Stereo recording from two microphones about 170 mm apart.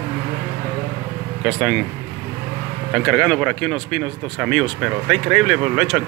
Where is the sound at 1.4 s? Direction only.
Centre (ahead or behind).